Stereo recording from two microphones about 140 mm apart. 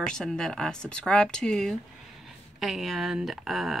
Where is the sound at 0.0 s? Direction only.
5° left (ahead or behind).